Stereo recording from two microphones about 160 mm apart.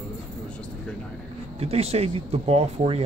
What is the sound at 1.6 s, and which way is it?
Speech, 40° right (ahead or behind).